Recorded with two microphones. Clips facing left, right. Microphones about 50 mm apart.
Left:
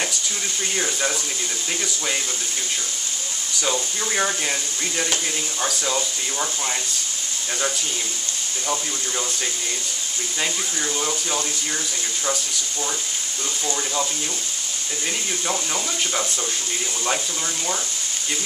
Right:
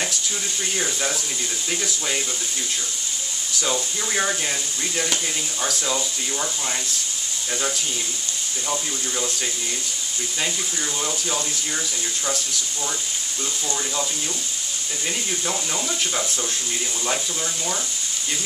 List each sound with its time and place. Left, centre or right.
0.7 s speech: centre
3.6 s speech: centre
11.0 s speech: centre
15.4 s speech: centre